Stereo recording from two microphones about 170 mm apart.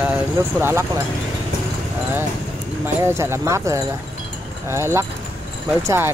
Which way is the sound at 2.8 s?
15° right (ahead or behind).